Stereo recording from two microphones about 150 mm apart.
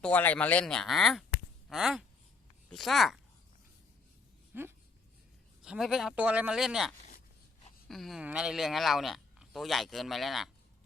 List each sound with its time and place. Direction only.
0.0 s speech: 10° left (ahead or behind)
4.5 s a sound: 15° right (ahead or behind)
5.6 s speech: 5° right (ahead or behind)